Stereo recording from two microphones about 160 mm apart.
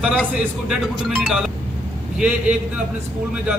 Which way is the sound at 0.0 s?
5° right (ahead or behind).